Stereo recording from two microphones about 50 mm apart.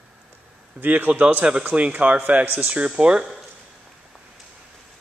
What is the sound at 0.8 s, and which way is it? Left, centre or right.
A man's voice, right.